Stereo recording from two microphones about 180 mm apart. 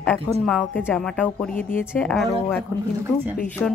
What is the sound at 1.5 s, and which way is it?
Speech, 50° left (ahead or behind).